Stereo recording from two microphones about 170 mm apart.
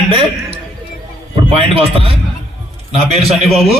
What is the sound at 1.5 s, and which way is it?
A man's voice, 35° right (ahead or behind).